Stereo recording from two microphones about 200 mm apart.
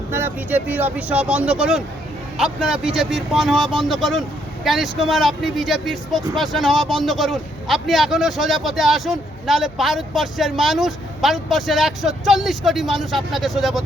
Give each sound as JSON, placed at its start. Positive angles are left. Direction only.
{"t": 0.1, "sound": "speech", "side_deg": -10}